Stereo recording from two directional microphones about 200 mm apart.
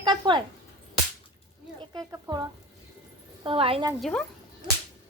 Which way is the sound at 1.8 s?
20° right (ahead or behind).